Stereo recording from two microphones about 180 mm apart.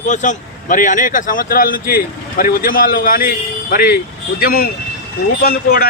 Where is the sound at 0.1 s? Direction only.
45° left (ahead or behind).